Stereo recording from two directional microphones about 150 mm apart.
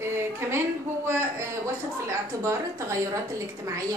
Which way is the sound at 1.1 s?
15° right (ahead or behind).